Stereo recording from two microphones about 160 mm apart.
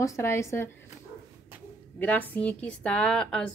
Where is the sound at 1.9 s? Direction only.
10° left (ahead or behind).